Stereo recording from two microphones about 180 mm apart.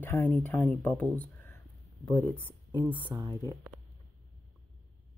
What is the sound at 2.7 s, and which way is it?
Speech, 25° right (ahead or behind).